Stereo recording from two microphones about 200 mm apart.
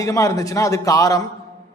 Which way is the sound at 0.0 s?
15° left (ahead or behind).